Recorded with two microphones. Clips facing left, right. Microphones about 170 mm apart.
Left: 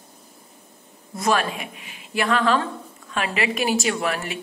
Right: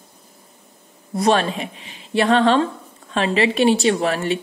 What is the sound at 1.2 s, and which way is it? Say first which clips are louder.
A woman's voice: right 5 dB; 30° right (ahead or behind).